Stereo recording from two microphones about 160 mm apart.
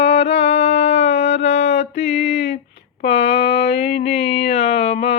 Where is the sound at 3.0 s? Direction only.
35° left (ahead or behind).